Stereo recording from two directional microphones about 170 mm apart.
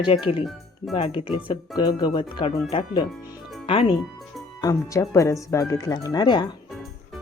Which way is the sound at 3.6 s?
35° left (ahead or behind).